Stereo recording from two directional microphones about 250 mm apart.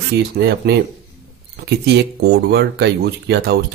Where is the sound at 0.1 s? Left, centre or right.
Right.